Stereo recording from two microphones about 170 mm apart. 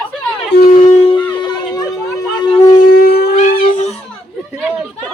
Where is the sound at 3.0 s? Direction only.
70° left (ahead or behind).